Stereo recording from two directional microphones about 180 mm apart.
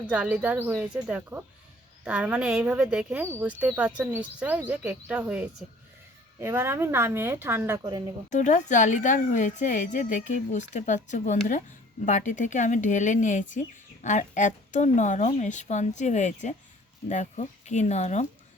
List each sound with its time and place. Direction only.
0.1 s a woman's voice: 5° right (ahead or behind)
8.3 s speech: 40° left (ahead or behind)